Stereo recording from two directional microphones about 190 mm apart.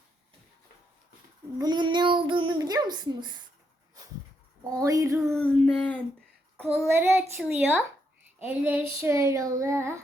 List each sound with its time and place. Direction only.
1.5 s a child's voice: 20° right (ahead or behind)
4.7 s child singing: 20° right (ahead or behind)
5.2 s a sound: 5° left (ahead or behind)
6.7 s child singing: 10° right (ahead or behind)